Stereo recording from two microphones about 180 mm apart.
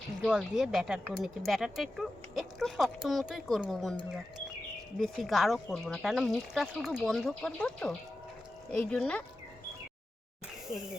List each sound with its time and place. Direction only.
0.3 s speech: 5° right (ahead or behind)
4.9 s speech: centre (ahead or behind)